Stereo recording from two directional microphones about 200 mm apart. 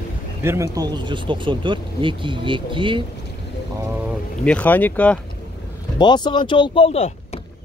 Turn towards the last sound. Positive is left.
turn(degrees=30)  # may be behind; listen again after turning